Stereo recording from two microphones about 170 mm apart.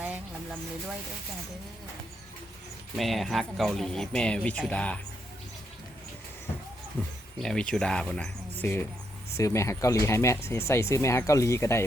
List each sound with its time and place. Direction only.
2.9 s speech: centre (ahead or behind)
7.3 s speech: 5° left (ahead or behind)